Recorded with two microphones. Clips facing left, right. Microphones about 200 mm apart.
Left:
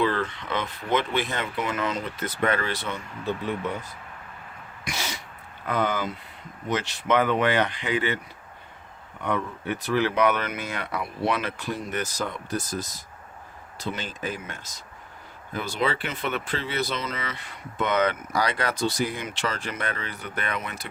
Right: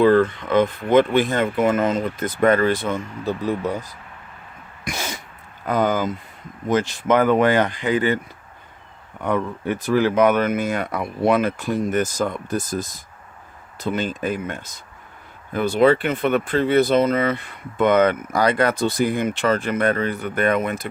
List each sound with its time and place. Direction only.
0.0 s speech: 50° right (ahead or behind)
4.9 s throat clearing: 50° right (ahead or behind)
5.6 s speech: 40° right (ahead or behind)
9.2 s speech: 45° right (ahead or behind)